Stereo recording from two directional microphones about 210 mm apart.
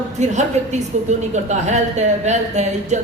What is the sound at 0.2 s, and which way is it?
A woman's voice, 35° right (ahead or behind).